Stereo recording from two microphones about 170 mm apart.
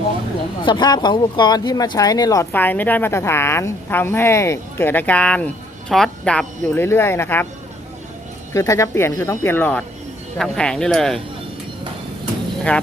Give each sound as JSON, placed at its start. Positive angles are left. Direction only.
{"t": 0.6, "sound": "speech", "side_deg": 25}
{"t": 8.5, "sound": "speech", "side_deg": 20}